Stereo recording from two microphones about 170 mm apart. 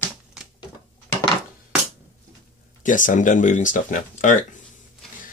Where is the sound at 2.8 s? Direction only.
50° left (ahead or behind).